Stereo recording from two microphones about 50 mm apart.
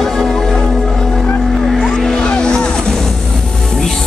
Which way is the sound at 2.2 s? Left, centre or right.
Centre.